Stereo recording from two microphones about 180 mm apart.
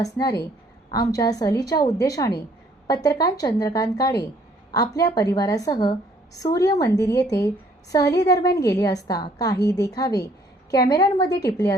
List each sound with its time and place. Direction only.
0.0 s a woman's voice: 20° left (ahead or behind)